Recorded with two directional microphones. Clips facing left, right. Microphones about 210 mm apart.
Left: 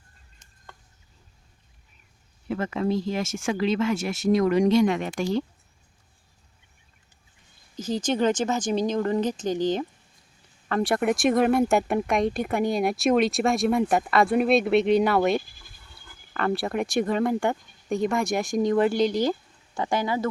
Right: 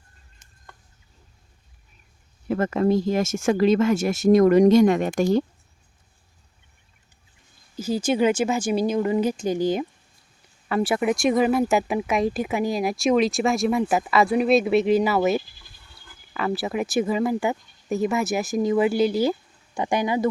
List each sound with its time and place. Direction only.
2.5 s speech: 45° right (ahead or behind)
7.8 s speech: 10° right (ahead or behind)